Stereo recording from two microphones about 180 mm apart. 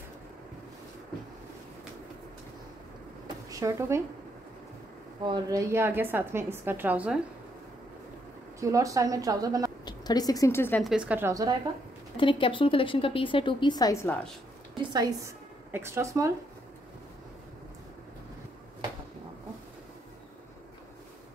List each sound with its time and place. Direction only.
3.4 s speech: 15° right (ahead or behind)
5.2 s a woman's voice: 20° right (ahead or behind)
8.5 s speech: 15° right (ahead or behind)
9.8 s a woman's voice: 20° left (ahead or behind)
10.8 s a woman's voice: 5° right (ahead or behind)
12.2 s a woman's voice: 30° left (ahead or behind)
14.8 s speech: 20° right (ahead or behind)